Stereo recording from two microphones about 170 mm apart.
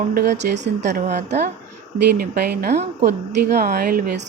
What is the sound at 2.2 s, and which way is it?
A woman's voice, 65° right (ahead or behind).